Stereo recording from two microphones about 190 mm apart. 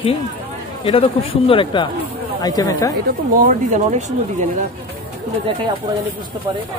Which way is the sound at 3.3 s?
40° right (ahead or behind).